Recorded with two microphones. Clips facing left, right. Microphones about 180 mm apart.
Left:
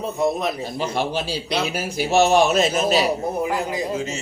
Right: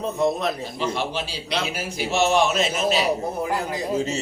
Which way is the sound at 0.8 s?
40° left (ahead or behind).